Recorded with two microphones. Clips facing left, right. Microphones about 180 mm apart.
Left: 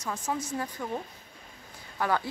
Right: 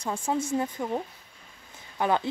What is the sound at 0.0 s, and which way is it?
Speech, 30° right (ahead or behind).